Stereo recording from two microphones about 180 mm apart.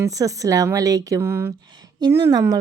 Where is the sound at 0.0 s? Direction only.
20° right (ahead or behind).